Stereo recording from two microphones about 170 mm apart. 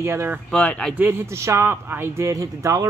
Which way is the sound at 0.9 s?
10° right (ahead or behind).